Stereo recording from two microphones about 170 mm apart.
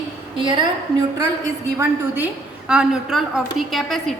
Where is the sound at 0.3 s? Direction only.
30° right (ahead or behind).